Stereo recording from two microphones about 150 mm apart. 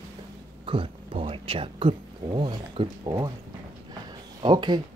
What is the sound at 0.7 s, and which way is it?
Speech, 35° right (ahead or behind).